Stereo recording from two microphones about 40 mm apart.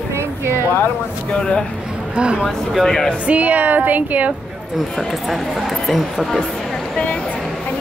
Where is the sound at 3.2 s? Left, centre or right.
Right.